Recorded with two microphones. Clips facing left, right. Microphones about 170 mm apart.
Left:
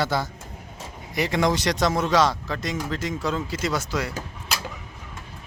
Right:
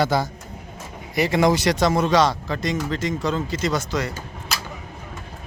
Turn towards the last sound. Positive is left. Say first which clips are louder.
# right 1 dB
turn(degrees=5)  # may be behind; listen again after turning